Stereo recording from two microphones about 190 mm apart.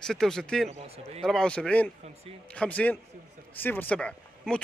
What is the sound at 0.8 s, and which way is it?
Speech, 35° right (ahead or behind).